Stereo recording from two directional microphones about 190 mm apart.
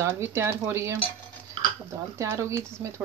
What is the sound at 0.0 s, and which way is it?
Speech, 15° right (ahead or behind).